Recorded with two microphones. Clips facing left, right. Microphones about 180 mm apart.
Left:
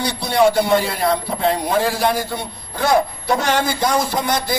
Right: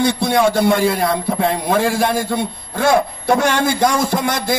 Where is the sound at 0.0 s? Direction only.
50° right (ahead or behind).